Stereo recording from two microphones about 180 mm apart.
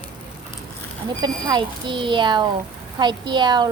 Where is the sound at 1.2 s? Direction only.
25° right (ahead or behind).